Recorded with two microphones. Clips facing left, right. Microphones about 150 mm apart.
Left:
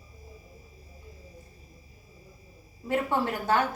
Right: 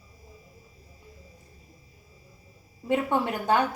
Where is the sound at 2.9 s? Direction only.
15° right (ahead or behind).